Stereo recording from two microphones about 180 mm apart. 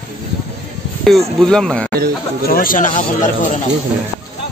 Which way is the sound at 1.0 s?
Centre (ahead or behind).